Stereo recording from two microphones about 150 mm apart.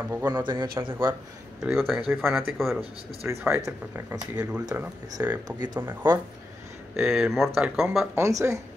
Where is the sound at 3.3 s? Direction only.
10° right (ahead or behind).